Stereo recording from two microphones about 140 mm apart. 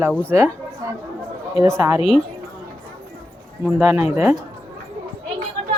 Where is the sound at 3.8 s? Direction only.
15° right (ahead or behind).